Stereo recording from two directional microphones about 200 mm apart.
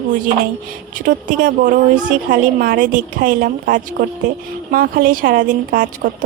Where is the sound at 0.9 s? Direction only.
40° right (ahead or behind).